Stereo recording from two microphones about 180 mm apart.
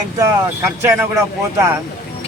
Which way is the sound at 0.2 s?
15° right (ahead or behind).